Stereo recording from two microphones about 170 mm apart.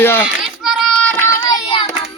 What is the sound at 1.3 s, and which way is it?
Child singing, 25° left (ahead or behind).